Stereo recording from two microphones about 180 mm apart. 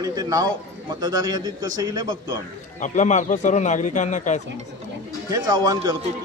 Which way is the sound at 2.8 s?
45° left (ahead or behind).